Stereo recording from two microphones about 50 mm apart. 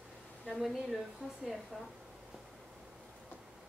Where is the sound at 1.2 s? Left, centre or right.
Centre.